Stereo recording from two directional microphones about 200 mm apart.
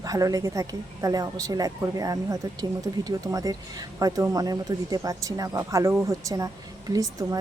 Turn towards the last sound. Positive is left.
turn(degrees=-20)  # may be behind; listen again after turning